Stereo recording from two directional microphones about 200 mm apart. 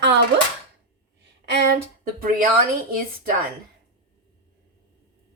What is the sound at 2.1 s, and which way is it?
Speech, 45° right (ahead or behind).